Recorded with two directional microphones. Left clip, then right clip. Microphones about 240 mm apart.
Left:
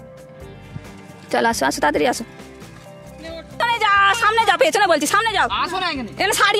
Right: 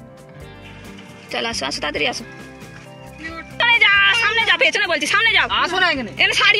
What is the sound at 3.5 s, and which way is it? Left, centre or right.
Music, left.